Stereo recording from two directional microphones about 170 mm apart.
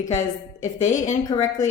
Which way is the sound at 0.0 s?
45° left (ahead or behind).